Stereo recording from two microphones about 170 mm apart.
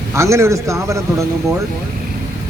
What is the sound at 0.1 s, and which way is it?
Speech, 15° right (ahead or behind).